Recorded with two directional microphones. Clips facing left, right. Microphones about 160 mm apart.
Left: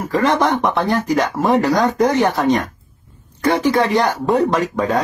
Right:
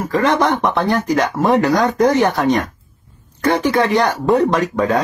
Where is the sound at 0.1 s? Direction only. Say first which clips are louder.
Even; centre (ahead or behind).